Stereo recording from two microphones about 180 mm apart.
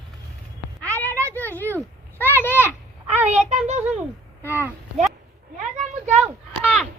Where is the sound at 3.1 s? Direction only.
40° right (ahead or behind).